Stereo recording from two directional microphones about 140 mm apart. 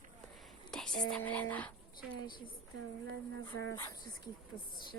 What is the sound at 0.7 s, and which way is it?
Speech, 5° left (ahead or behind).